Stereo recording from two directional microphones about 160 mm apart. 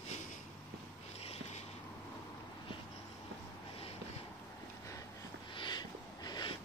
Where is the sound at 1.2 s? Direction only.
40° left (ahead or behind).